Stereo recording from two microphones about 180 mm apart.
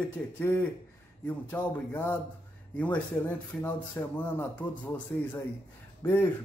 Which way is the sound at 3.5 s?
10° left (ahead or behind).